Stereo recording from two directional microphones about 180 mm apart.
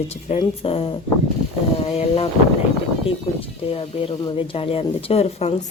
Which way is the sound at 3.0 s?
30° left (ahead or behind).